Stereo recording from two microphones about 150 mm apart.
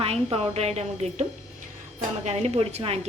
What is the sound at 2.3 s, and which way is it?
Speech, 45° right (ahead or behind).